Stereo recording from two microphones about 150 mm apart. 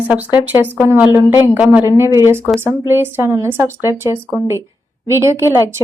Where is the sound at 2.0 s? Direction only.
20° right (ahead or behind).